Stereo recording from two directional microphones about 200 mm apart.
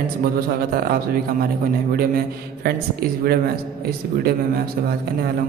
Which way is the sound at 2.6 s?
50° right (ahead or behind).